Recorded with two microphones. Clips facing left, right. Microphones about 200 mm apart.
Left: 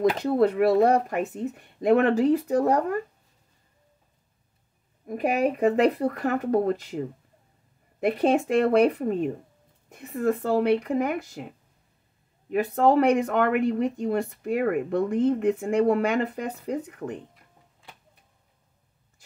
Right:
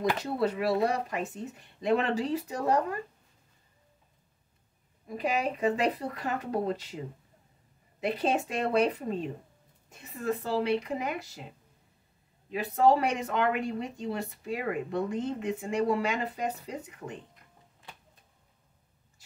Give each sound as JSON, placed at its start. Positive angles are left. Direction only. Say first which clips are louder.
{"t": 0.2, "sound": "speech", "louder": "left 8 dB", "side_deg": 55}
{"t": 5.0, "sound": "speech", "louder": "left 6 dB", "side_deg": 55}
{"t": 8.0, "sound": "speech", "louder": "left 7 dB", "side_deg": 55}
{"t": 12.4, "sound": "speech", "louder": "left 3 dB", "side_deg": 55}